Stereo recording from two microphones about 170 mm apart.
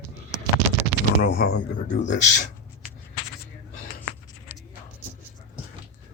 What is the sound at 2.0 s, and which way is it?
Speech, 45° left (ahead or behind).